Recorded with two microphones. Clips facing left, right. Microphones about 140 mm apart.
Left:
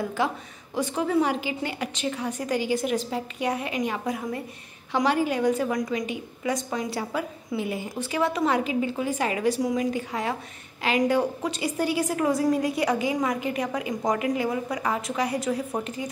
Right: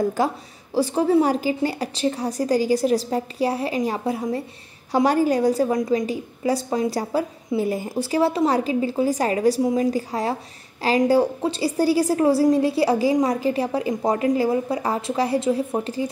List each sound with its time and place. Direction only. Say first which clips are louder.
0.2 s a woman's voice: right 4 dB; 40° right (ahead or behind)
4.9 s a woman's voice: right 5 dB; 40° right (ahead or behind)